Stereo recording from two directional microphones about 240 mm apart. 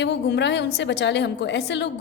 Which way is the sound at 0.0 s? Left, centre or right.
Left.